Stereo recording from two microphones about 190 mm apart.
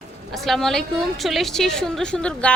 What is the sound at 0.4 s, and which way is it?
Speech, centre (ahead or behind).